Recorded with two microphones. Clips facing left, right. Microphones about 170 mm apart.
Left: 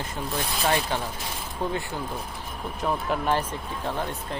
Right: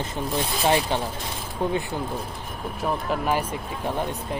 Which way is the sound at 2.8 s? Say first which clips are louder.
Right 1 dB; 5° right (ahead or behind).